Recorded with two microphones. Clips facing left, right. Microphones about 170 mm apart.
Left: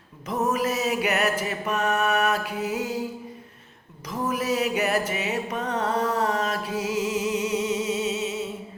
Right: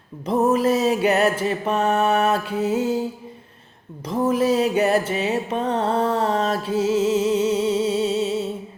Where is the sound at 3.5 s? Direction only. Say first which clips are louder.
Right 7 dB; 30° right (ahead or behind).